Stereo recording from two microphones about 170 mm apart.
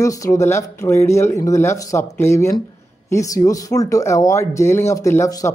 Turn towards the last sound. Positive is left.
turn(degrees=20)  # may be behind; listen again after turning